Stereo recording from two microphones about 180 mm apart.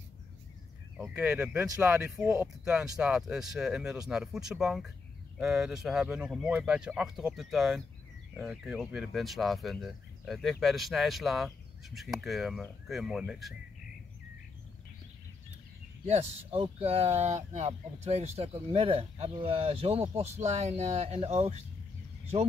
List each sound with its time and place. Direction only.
0.9 s speech: 10° right (ahead or behind)
2.6 s speech: 5° right (ahead or behind)
16.1 s speech: 35° right (ahead or behind)